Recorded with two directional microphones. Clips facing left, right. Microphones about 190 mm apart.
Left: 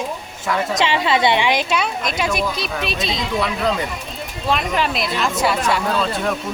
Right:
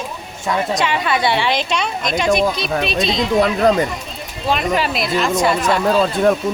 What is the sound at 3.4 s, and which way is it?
Speech, 45° right (ahead or behind).